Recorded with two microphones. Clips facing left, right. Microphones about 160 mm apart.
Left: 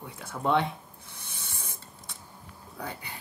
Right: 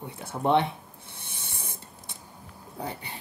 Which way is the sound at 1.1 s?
25° right (ahead or behind).